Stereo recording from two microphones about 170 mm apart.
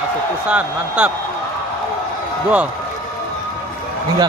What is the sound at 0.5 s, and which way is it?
Speech, 5° right (ahead or behind).